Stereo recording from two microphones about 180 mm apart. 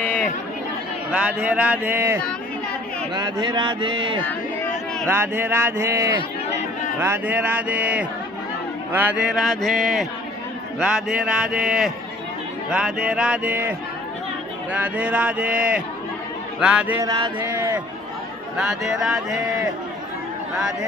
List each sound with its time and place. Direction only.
1.1 s speech: 5° right (ahead or behind)
3.2 s speech: 25° right (ahead or behind)
5.1 s speech: 10° right (ahead or behind)
18.6 s speech: centre (ahead or behind)